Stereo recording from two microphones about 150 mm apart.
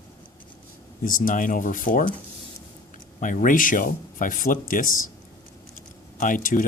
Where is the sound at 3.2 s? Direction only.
60° left (ahead or behind).